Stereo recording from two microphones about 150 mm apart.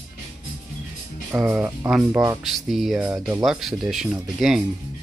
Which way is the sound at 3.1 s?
25° right (ahead or behind).